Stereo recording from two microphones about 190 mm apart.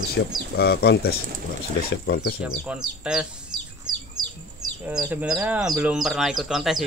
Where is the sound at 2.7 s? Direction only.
5° right (ahead or behind).